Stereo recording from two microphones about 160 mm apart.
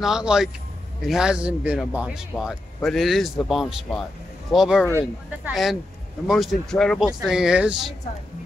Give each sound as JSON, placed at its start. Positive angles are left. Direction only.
{"t": 0.0, "sound": "a man's voice", "side_deg": -5}